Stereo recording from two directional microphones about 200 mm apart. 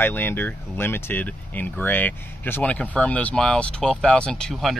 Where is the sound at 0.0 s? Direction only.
10° left (ahead or behind).